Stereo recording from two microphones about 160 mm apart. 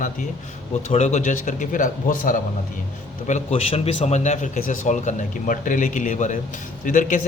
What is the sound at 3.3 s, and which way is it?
A man's voice, 45° left (ahead or behind).